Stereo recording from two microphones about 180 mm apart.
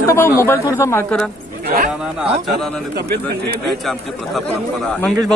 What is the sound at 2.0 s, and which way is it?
Speech, centre (ahead or behind).